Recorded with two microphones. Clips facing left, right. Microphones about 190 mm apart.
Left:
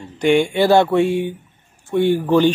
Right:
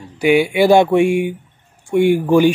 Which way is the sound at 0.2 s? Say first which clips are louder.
Right 2 dB; 5° right (ahead or behind).